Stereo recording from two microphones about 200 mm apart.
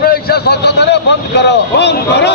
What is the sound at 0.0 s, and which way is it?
Vehicle, 50° left (ahead or behind).